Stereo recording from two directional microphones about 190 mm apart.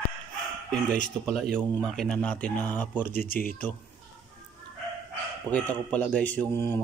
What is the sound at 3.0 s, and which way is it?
Speech, 50° left (ahead or behind).